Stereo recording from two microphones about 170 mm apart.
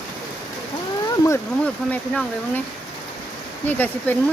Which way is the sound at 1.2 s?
15° left (ahead or behind).